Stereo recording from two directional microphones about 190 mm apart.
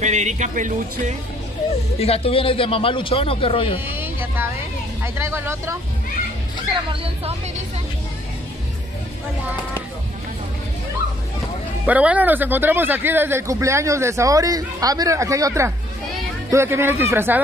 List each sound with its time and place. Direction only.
0.0 s speech: 40° right (ahead or behind)
2.0 s a man's voice: 30° left (ahead or behind)
3.8 s a sound: 10° right (ahead or behind)
5.0 s speech: 10° right (ahead or behind)
6.7 s speech: 25° right (ahead or behind)
11.8 s speech: 5° right (ahead or behind)